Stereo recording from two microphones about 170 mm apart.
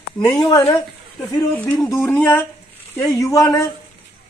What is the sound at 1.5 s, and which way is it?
Speech, 10° left (ahead or behind).